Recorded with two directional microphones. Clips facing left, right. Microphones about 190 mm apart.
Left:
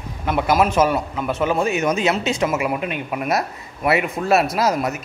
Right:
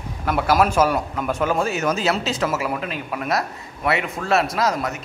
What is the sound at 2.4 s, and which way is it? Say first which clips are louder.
A man's voice: left 2 dB; 15° left (ahead or behind).